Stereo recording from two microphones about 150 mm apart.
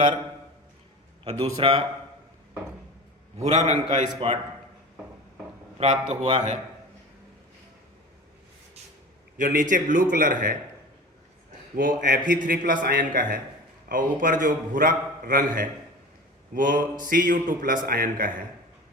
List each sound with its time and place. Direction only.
1.2 s a man's voice: 40° right (ahead or behind)
3.7 s a man's voice: 45° right (ahead or behind)
5.8 s a man's voice: 50° right (ahead or behind)
9.4 s a man's voice: 60° right (ahead or behind)
11.8 s speech: 90° right
12.3 s a man's voice: 65° right (ahead or behind)